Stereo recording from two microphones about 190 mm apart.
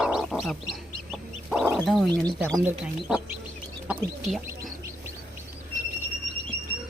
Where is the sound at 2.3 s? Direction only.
10° right (ahead or behind).